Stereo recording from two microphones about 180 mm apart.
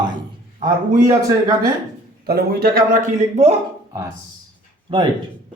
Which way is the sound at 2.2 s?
60° right (ahead or behind).